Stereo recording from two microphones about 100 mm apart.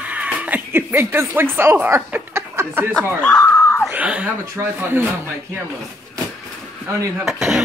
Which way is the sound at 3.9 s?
15° right (ahead or behind).